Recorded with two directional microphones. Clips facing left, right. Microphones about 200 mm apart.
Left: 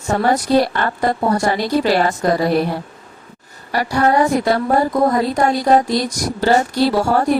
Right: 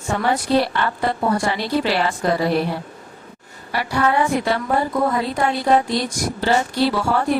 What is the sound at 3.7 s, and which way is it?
A woman's voice, 40° left (ahead or behind).